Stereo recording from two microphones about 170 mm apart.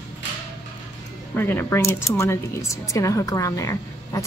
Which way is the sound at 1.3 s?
10° left (ahead or behind).